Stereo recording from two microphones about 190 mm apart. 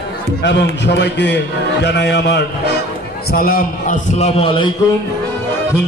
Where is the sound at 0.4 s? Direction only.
65° left (ahead or behind); by 4.3 s 45° left (ahead or behind).